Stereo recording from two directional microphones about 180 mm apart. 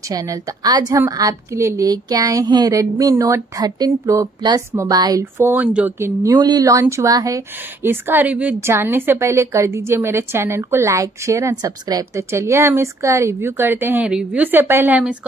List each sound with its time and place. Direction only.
0.1 s a woman's voice: 20° right (ahead or behind)